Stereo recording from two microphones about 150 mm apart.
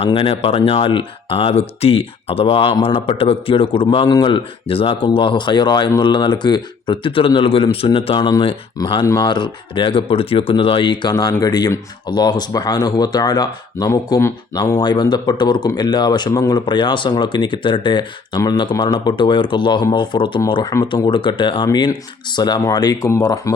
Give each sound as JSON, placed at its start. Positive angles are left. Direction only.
{"t": 0.0, "sound": "speech", "side_deg": 35}